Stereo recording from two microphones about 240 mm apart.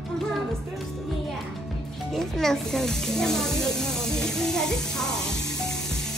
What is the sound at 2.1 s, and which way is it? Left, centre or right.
Snake, centre.